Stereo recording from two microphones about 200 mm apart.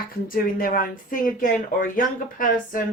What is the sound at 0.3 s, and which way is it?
Speech, 45° left (ahead or behind).